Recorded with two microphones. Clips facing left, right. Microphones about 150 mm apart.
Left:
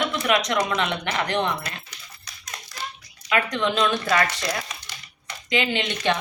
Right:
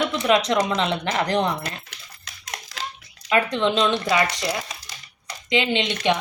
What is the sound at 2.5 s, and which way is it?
Hands, 90° right.